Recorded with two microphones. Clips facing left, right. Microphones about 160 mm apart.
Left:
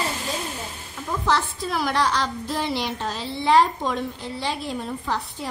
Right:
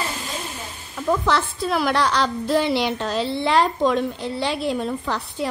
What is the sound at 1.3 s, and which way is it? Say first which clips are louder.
A woman's voice: right 2 dB; 70° right (ahead or behind).